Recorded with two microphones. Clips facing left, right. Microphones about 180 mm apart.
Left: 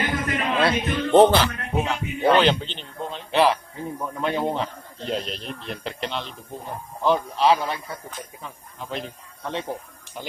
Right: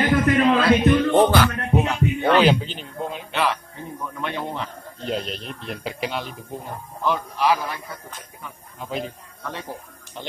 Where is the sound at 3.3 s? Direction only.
35° left (ahead or behind).